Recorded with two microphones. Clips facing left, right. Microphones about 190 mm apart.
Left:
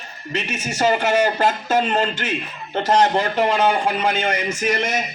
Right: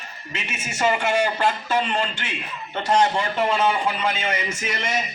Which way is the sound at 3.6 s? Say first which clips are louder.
Left 3 dB; 55° left (ahead or behind).